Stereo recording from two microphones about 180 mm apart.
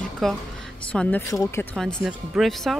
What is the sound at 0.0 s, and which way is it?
Music, centre (ahead or behind).